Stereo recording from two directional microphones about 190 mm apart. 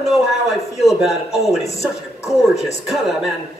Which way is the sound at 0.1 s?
Centre (ahead or behind).